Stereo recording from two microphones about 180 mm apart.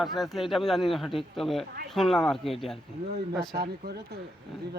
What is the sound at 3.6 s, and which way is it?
Speech, 60° right (ahead or behind).